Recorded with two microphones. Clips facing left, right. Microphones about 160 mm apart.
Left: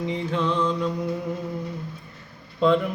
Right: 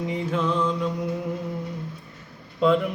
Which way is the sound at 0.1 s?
5° right (ahead or behind).